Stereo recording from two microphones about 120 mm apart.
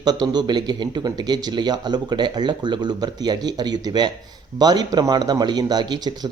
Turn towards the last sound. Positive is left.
turn(degrees=-35)  # may be behind; listen again after turning